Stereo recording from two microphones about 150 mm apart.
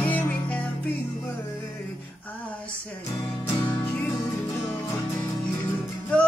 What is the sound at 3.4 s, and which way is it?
Music, 15° left (ahead or behind).